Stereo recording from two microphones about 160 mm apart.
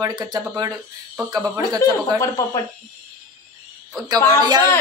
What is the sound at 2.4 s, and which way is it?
Speech, 20° left (ahead or behind).